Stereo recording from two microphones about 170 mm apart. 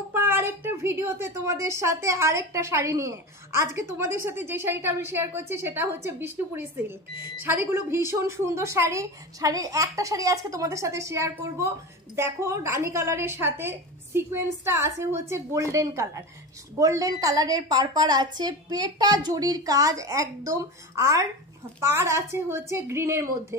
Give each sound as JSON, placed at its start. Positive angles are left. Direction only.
{"t": 0.1, "sound": "a woman's voice", "side_deg": -15}